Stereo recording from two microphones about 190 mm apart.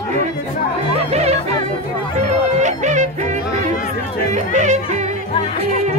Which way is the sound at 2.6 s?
40° right (ahead or behind).